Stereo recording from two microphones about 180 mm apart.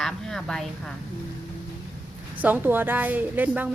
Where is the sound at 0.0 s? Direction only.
Centre (ahead or behind).